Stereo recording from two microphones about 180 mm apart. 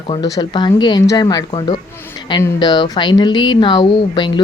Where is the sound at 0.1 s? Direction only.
25° left (ahead or behind).